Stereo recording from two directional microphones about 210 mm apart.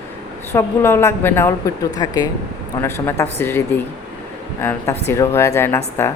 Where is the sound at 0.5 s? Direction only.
10° left (ahead or behind).